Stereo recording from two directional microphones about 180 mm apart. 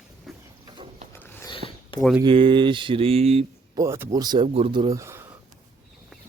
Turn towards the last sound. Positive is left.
turn(degrees=-15)  # may be behind; listen again after turning